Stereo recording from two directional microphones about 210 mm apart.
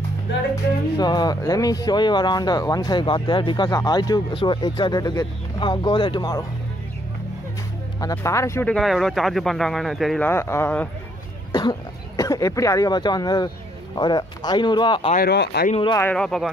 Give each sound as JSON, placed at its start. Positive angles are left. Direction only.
{"t": 0.9, "sound": "speech", "side_deg": 20}
{"t": 8.0, "sound": "speech", "side_deg": 15}
{"t": 8.7, "sound": "speech", "side_deg": 0}
{"t": 12.2, "sound": "speech", "side_deg": 15}
{"t": 15.1, "sound": "speech", "side_deg": 50}
{"t": 15.7, "sound": "speech", "side_deg": 25}
{"t": 16.0, "sound": "speech", "side_deg": 5}